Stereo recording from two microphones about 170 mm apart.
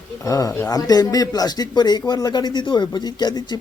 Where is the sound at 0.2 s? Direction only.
20° left (ahead or behind).